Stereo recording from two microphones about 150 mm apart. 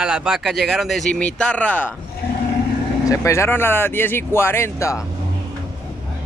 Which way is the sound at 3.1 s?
20° left (ahead or behind).